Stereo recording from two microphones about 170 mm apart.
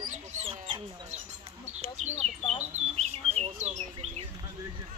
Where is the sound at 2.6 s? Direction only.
40° right (ahead or behind).